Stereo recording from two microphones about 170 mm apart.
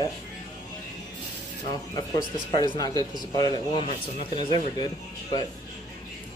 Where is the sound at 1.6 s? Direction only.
25° left (ahead or behind).